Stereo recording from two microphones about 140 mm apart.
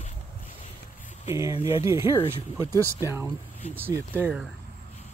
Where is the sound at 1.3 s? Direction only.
25° right (ahead or behind).